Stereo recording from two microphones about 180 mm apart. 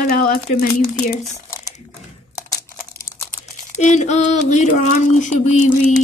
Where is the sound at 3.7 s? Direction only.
40° left (ahead or behind).